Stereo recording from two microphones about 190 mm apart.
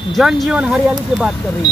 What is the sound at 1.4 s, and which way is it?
Speech, 10° left (ahead or behind).